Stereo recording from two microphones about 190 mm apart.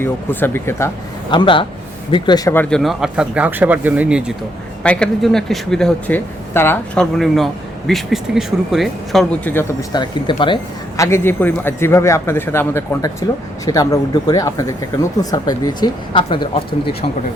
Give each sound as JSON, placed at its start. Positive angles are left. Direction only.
{"t": 0.0, "sound": "a man's voice", "side_deg": 10}
{"t": 1.3, "sound": "speech", "side_deg": 25}
{"t": 4.8, "sound": "speech", "side_deg": 5}
{"t": 9.9, "sound": "a man's voice", "side_deg": 25}